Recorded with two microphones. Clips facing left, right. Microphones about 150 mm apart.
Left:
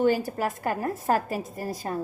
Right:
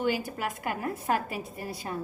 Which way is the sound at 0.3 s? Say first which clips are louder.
Left 5 dB; 40° left (ahead or behind).